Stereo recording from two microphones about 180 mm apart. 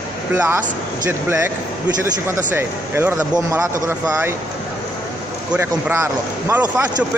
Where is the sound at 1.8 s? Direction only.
10° right (ahead or behind).